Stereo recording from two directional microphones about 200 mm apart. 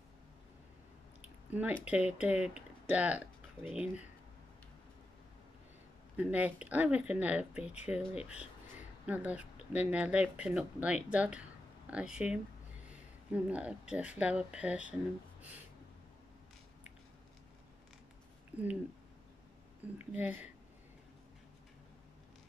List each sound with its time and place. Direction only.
1.5 s speech: 10° right (ahead or behind)
6.1 s speech: 5° right (ahead or behind)
18.5 s speech: 5° right (ahead or behind)
20.1 s speech: 10° right (ahead or behind)